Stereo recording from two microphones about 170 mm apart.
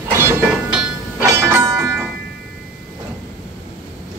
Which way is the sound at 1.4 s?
15° right (ahead or behind).